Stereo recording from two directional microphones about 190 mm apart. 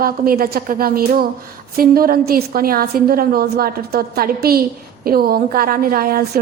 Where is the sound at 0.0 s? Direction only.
50° right (ahead or behind).